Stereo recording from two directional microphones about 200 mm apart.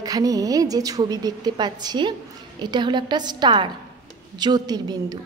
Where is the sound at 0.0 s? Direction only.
20° right (ahead or behind).